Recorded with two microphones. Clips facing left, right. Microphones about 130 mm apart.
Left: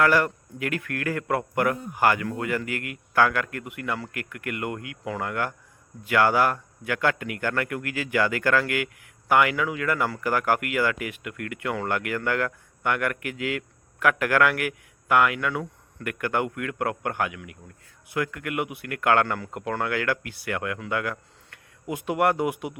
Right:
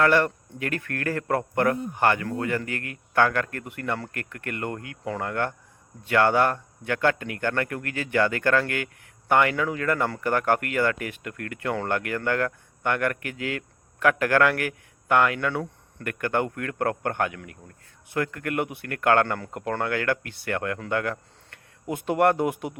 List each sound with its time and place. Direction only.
0.0 s speech: 30° right (ahead or behind)
22.4 s a man's voice: 10° left (ahead or behind)